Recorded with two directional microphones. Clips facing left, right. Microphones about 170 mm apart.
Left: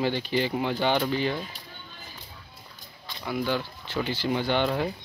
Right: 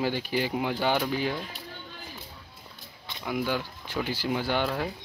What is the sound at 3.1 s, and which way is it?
Speech, 15° right (ahead or behind).